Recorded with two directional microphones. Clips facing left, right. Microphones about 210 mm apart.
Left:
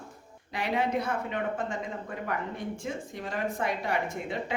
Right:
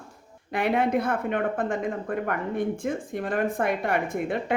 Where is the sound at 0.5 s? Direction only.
55° right (ahead or behind).